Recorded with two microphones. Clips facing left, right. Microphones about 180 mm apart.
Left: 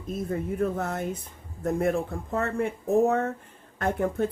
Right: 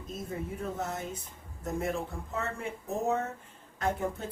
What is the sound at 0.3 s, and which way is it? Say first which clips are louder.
Speech: left 9 dB; 60° left (ahead or behind).